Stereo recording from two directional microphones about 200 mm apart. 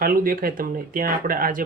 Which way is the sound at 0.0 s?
45° right (ahead or behind).